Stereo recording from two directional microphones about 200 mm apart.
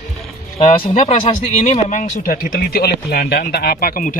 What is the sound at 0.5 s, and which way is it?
Speech, 30° left (ahead or behind).